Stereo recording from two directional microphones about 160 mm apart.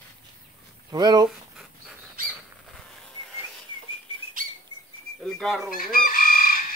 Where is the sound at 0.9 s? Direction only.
25° right (ahead or behind).